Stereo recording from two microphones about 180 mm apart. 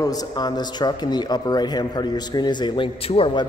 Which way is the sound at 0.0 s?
20° left (ahead or behind).